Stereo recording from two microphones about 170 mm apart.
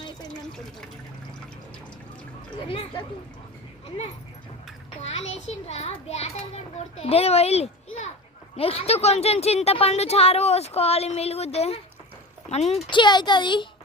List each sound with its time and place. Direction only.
2.6 s speech: 35° left (ahead or behind)
5.3 s a child's voice: 40° left (ahead or behind)